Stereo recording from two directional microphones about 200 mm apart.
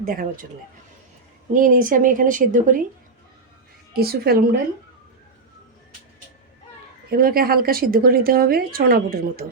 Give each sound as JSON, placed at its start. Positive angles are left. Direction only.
{"t": 0.0, "sound": "speech", "side_deg": -45}
{"t": 1.5, "sound": "a woman's voice", "side_deg": -40}
{"t": 3.9, "sound": "a woman's voice", "side_deg": -50}
{"t": 7.1, "sound": "a woman's voice", "side_deg": -45}